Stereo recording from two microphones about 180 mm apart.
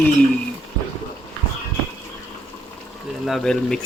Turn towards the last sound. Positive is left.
turn(degrees=0)  # may be behind; listen again after turning